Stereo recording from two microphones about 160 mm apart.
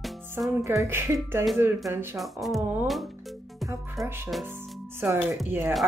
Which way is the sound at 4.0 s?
Centre (ahead or behind).